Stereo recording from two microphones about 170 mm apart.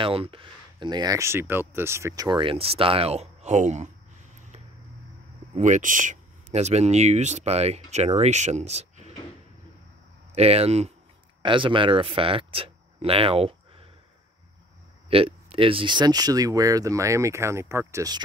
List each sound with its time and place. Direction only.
0.0 s speech: 30° right (ahead or behind)
5.5 s speech: 45° right (ahead or behind)
10.3 s speech: 40° right (ahead or behind)
15.0 s speech: 35° right (ahead or behind)